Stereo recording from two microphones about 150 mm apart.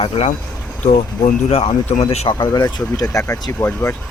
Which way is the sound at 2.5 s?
25° left (ahead or behind).